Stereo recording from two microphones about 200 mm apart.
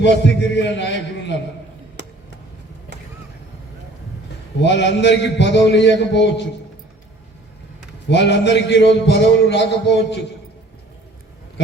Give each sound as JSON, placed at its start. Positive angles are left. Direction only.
{"t": 0.2, "sound": "a man's voice", "side_deg": 60}
{"t": 2.0, "sound": "a sound", "side_deg": -60}
{"t": 4.6, "sound": "a man's voice", "side_deg": 60}
{"t": 8.1, "sound": "a man's voice", "side_deg": 60}